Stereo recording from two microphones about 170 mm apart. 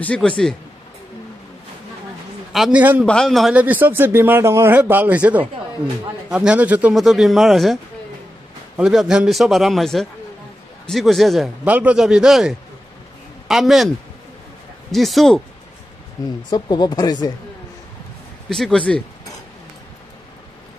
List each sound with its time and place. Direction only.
0.0 s speech: 5° left (ahead or behind)
2.5 s speech: 5° right (ahead or behind)
3.1 s speech: centre (ahead or behind)
16.4 s speech: 25° left (ahead or behind)
18.5 s speech: 5° left (ahead or behind)